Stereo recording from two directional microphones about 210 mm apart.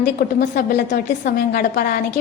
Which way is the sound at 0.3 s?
45° left (ahead or behind).